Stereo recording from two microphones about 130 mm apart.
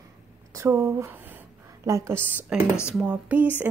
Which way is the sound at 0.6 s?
20° right (ahead or behind).